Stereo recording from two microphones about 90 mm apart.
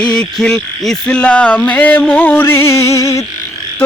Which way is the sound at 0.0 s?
10° left (ahead or behind).